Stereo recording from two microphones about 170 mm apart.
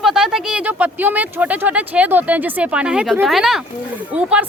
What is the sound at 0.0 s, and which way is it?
Speech, 5° right (ahead or behind).